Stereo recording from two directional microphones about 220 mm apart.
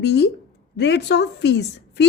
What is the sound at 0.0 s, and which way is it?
A woman's voice, 50° left (ahead or behind).